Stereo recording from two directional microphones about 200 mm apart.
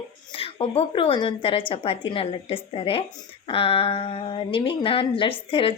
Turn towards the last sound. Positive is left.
turn(degrees=25)  # may be behind; listen again after turning